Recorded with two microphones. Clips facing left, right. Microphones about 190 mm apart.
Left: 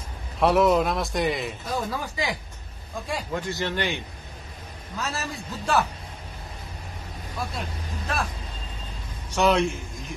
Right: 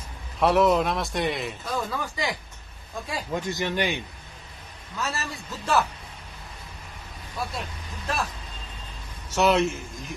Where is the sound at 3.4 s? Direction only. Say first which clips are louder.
Right 3 dB; 15° right (ahead or behind).